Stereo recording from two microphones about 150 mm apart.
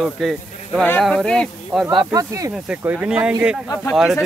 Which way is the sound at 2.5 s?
5° right (ahead or behind).